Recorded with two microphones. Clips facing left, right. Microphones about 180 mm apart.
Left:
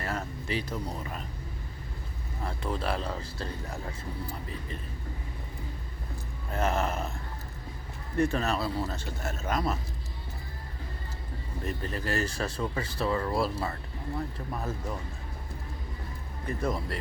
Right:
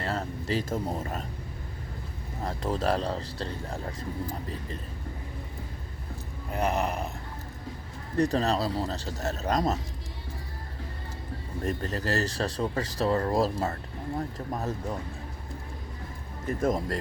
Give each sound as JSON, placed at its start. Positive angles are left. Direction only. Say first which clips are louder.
{"t": 0.0, "sound": "speech", "louder": "right 3 dB", "side_deg": -30}
{"t": 2.4, "sound": "speech", "louder": "right 4 dB", "side_deg": -40}
{"t": 6.5, "sound": "a sound", "louder": "right 1 dB", "side_deg": -15}
{"t": 8.1, "sound": "speech", "louder": "right 2 dB", "side_deg": -35}
{"t": 11.6, "sound": "speech", "louder": "right 4 dB", "side_deg": -45}
{"t": 16.6, "sound": "speech", "louder": "right 5 dB", "side_deg": -45}